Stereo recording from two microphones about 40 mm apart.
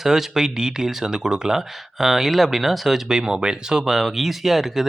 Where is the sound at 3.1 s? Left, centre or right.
Centre.